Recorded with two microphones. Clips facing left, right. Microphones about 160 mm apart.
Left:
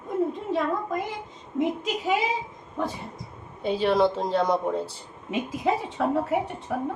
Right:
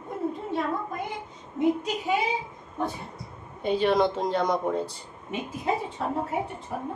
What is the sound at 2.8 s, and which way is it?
Speech, 90° left.